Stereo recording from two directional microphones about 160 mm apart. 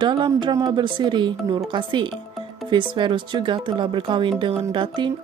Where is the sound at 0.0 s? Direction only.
30° right (ahead or behind).